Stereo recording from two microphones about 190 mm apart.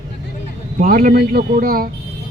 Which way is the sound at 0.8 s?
45° right (ahead or behind).